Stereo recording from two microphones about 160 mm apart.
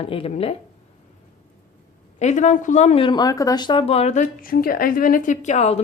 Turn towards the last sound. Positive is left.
turn(degrees=45)  # may be behind; listen again after turning